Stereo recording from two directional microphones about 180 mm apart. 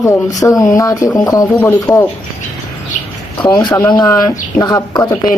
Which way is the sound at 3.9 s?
20° left (ahead or behind).